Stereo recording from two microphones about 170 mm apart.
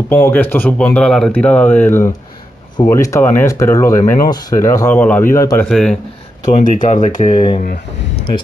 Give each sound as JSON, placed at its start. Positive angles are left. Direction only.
{"t": 0.1, "sound": "speech", "side_deg": 10}
{"t": 5.7, "sound": "speech", "side_deg": 5}
{"t": 6.4, "sound": "speech", "side_deg": 50}
{"t": 7.6, "sound": "speech", "side_deg": 60}